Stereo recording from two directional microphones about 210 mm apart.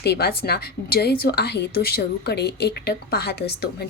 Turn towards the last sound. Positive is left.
turn(degrees=50)  # may be behind; listen again after turning